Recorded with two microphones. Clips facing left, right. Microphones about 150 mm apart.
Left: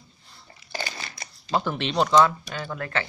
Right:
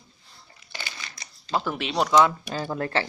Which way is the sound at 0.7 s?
45° left (ahead or behind).